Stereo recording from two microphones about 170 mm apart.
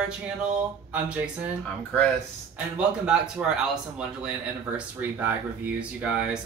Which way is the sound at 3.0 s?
5° right (ahead or behind).